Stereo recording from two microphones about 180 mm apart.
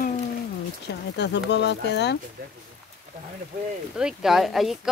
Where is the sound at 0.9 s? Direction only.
70° left (ahead or behind).